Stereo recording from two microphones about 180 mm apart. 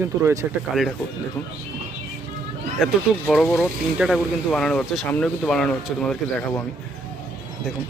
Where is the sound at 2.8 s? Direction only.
Centre (ahead or behind).